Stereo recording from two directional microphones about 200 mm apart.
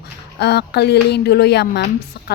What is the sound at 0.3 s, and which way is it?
A woman's voice, 55° left (ahead or behind).